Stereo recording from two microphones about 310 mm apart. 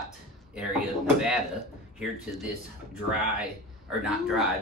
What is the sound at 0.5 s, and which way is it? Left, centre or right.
Speech, centre.